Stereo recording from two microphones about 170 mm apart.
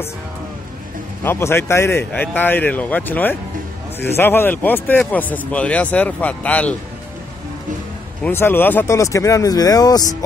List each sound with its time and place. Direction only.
1.2 s speech: 15° left (ahead or behind)
8.2 s speech: 15° left (ahead or behind)